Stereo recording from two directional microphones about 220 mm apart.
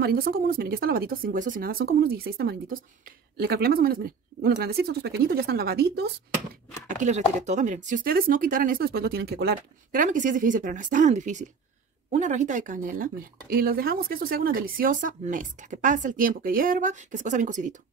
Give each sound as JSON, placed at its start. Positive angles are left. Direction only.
{"t": 0.0, "sound": "speech", "side_deg": -40}
{"t": 7.0, "sound": "a woman's voice", "side_deg": -30}